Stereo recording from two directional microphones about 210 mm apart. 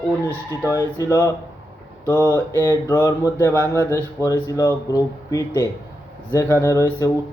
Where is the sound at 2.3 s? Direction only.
15° left (ahead or behind).